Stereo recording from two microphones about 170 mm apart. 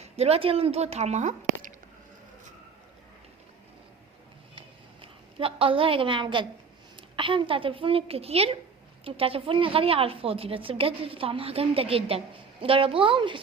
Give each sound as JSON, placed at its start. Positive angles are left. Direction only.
{"t": 0.0, "sound": "speech", "side_deg": -35}
{"t": 5.4, "sound": "a woman's voice", "side_deg": -30}